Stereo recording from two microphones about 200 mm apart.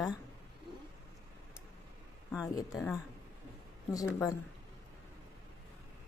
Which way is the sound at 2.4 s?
15° left (ahead or behind).